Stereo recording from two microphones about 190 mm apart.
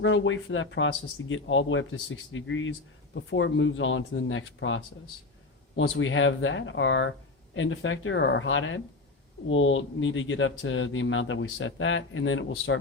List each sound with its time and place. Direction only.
0.0 s speech: 80° left
3.2 s speech: 80° left